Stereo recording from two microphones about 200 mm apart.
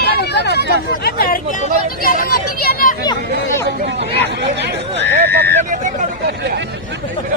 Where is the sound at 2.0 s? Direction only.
45° left (ahead or behind).